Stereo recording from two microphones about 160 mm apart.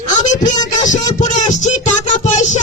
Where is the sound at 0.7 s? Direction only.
50° left (ahead or behind).